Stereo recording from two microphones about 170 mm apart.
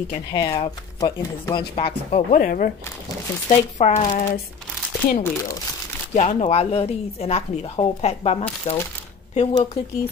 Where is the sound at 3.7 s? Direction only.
40° left (ahead or behind).